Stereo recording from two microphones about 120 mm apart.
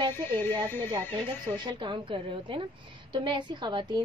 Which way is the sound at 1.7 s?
40° right (ahead or behind).